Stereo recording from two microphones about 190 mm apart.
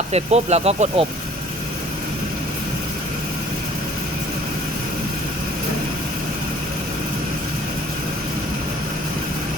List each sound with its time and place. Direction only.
0.1 s speech: 35° right (ahead or behind)